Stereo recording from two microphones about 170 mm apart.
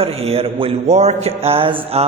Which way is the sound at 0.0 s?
35° right (ahead or behind).